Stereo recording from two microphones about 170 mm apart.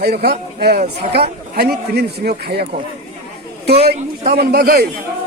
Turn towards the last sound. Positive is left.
turn(degrees=-65)  # may be behind; listen again after turning